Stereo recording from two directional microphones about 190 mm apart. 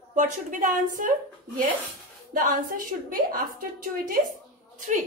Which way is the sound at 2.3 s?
45° right (ahead or behind).